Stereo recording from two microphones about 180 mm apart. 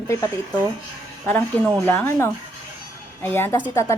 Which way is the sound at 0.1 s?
15° left (ahead or behind).